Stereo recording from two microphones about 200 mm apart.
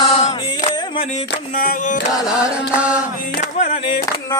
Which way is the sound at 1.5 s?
45° left (ahead or behind).